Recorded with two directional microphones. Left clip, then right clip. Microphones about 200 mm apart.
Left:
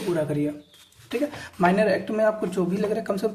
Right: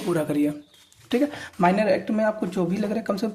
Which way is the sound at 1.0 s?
40° right (ahead or behind).